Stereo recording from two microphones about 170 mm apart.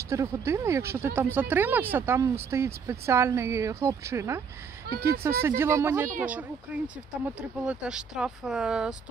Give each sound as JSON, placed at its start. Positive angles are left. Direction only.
{"t": 0.1, "sound": "speech", "side_deg": -15}